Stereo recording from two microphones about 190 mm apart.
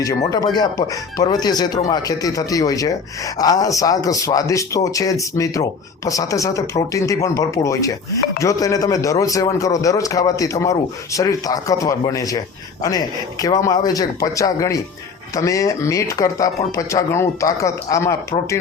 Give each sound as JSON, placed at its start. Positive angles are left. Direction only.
{"t": 0.0, "sound": "a man's voice", "side_deg": 20}